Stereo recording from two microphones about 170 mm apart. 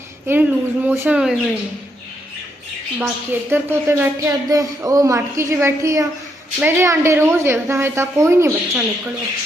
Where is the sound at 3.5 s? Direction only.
15° right (ahead or behind).